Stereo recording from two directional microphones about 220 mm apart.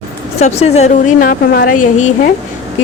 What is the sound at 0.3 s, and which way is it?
A woman's voice, 30° left (ahead or behind).